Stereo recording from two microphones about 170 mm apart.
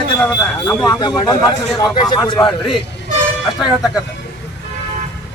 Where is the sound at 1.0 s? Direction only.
25° left (ahead or behind).